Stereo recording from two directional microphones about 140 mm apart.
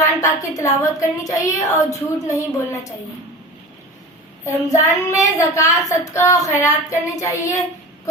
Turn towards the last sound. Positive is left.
turn(degrees=20)  # may be behind; listen again after turning